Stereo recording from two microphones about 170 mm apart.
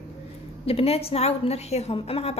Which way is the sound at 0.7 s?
35° left (ahead or behind).